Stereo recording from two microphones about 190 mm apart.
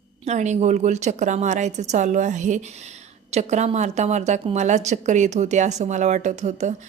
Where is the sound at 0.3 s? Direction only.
35° right (ahead or behind).